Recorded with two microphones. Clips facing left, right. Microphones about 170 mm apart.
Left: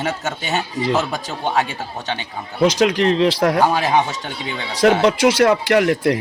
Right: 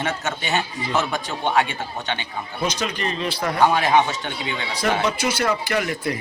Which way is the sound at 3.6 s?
35° left (ahead or behind).